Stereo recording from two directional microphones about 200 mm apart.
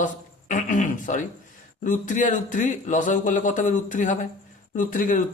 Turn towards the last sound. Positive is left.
turn(degrees=40)  # may be behind; listen again after turning